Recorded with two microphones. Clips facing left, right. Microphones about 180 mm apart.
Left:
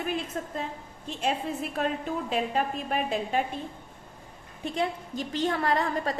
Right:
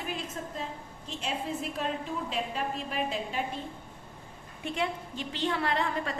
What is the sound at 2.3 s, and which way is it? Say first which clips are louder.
A woman's voice: left 7 dB; 50° left (ahead or behind).